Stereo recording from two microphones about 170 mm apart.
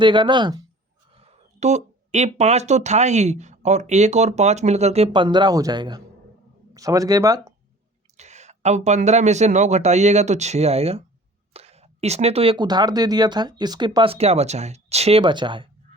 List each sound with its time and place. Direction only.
0.0 s speech: 25° right (ahead or behind)
1.1 s speech: 40° right (ahead or behind); by 7.5 s 20° right (ahead or behind)
8.1 s speech: 40° right (ahead or behind)
15.2 s speech: 25° right (ahead or behind)